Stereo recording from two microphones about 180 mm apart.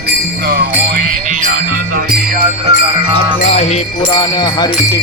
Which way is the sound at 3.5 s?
40° left (ahead or behind).